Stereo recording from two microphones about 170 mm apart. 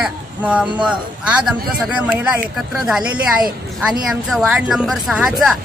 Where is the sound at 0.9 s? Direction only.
5° right (ahead or behind).